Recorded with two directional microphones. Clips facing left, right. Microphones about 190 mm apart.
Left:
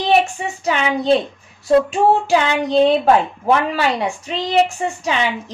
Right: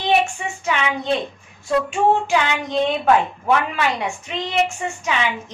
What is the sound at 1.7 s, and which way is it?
Child singing, 35° left (ahead or behind).